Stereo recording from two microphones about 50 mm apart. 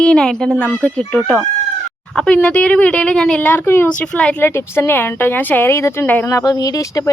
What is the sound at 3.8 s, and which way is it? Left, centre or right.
Speech, left.